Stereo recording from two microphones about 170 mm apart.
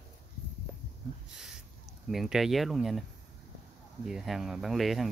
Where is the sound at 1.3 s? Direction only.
5° right (ahead or behind).